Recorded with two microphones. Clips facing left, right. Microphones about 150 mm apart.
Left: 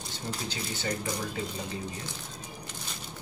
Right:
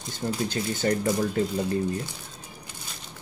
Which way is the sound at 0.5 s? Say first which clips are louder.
Right 7 dB; 50° right (ahead or behind).